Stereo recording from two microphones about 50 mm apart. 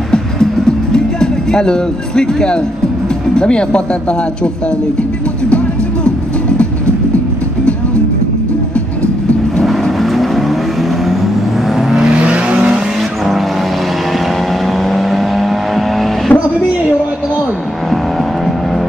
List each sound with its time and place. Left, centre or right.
0.9 s speech: centre
9.6 s vehicle: centre
12.3 s vehicle: right
14.8 s vehicle: centre
16.3 s music: left